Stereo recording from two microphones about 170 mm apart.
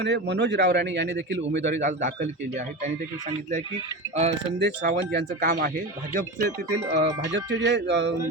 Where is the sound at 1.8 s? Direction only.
45° right (ahead or behind).